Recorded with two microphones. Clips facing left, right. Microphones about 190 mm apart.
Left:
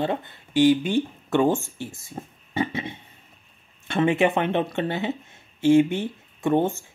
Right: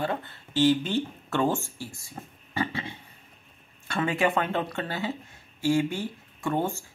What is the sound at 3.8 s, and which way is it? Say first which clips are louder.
Speech: left 5 dB; 25° left (ahead or behind).